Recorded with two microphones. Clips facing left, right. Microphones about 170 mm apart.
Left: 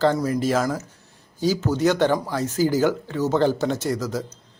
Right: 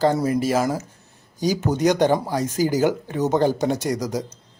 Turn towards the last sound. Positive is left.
turn(degrees=-15)  # may be behind; listen again after turning